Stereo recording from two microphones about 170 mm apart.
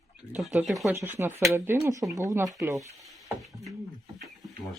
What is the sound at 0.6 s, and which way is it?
Speech, centre (ahead or behind).